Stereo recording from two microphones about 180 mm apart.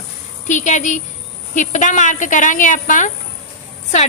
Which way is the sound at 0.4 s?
40° left (ahead or behind).